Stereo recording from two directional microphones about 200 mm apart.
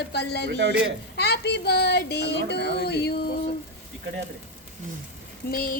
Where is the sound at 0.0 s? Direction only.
55° left (ahead or behind).